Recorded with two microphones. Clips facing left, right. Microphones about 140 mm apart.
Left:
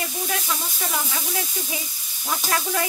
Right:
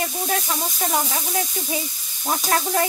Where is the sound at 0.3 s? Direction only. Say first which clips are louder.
Right 4 dB; 40° right (ahead or behind).